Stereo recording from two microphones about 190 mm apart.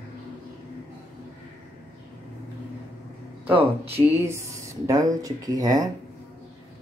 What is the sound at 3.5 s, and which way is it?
Speech, 30° right (ahead or behind).